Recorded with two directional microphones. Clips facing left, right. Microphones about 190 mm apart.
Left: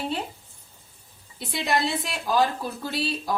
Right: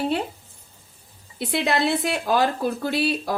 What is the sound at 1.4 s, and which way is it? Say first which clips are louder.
A woman's voice: right 3 dB; 65° right (ahead or behind).